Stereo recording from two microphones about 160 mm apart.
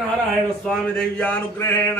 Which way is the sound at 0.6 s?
5° left (ahead or behind).